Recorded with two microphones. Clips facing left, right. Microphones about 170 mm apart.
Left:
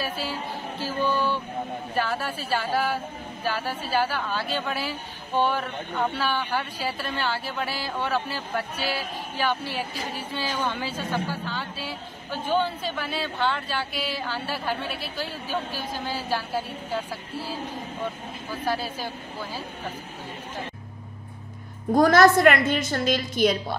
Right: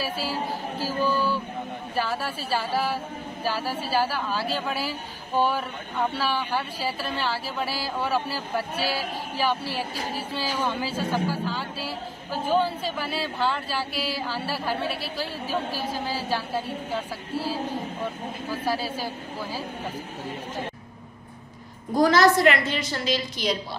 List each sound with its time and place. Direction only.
0.8 s a sound: 5° right (ahead or behind)
2.0 s speech: 5° right (ahead or behind)
18.5 s speech: 5° right (ahead or behind)
21.9 s a woman's voice: 50° left (ahead or behind)